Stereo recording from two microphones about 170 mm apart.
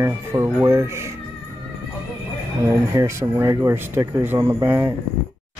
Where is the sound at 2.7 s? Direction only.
15° right (ahead or behind).